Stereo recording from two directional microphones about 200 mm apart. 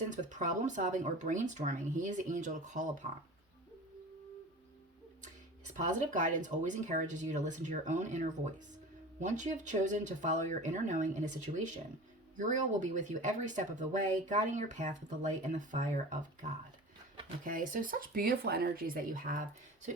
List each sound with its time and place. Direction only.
0.1 s speech: 40° right (ahead or behind)
5.7 s speech: 40° right (ahead or behind)